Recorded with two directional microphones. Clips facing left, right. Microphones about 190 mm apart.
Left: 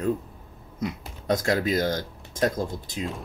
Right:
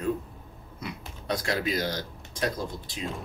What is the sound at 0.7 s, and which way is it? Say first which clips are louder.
Speech: left 7 dB; 45° left (ahead or behind).